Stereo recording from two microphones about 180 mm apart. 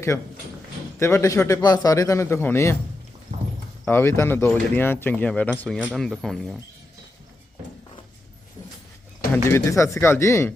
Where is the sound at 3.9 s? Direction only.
15° left (ahead or behind).